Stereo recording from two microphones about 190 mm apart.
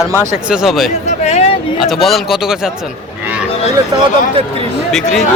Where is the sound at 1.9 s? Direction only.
Centre (ahead or behind).